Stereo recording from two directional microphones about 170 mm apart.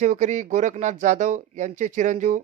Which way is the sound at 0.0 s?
45° right (ahead or behind).